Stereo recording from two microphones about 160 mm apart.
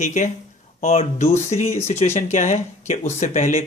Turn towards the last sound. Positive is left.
turn(degrees=50)  # may be behind; listen again after turning